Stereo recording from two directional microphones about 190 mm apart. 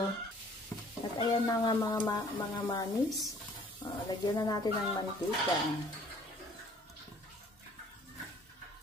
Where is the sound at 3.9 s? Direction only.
20° left (ahead or behind).